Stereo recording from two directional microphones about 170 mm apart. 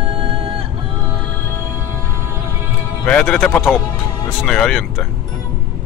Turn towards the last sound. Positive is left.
turn(degrees=5)  # may be behind; listen again after turning